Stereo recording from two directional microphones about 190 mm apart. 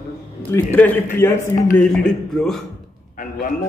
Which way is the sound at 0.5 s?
10° left (ahead or behind).